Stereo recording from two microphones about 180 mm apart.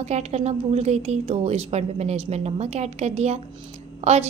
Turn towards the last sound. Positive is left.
turn(degrees=-40)  # may be behind; listen again after turning